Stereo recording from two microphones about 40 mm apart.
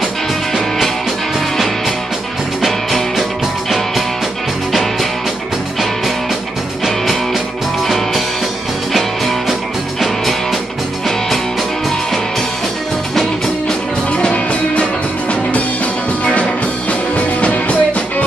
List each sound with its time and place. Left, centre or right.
2.6 s music: centre
7.8 s music: centre
13.1 s music: centre
14.1 s music: left
17.4 s music: left